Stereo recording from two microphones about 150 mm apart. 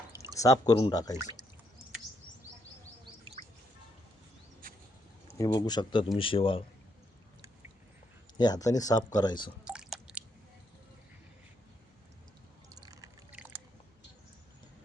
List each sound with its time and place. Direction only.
0.3 s speech: 20° left (ahead or behind)
5.4 s a man's voice: 25° left (ahead or behind)
8.4 s speech: 25° left (ahead or behind)
9.6 s drip: 5° right (ahead or behind)
12.7 s a sound: 25° right (ahead or behind)